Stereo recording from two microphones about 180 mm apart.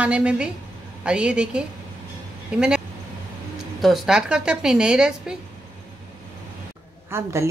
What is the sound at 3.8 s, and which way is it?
Speech, centre (ahead or behind).